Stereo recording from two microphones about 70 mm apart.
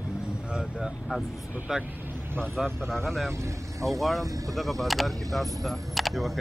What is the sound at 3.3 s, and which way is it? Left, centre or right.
Speech, right.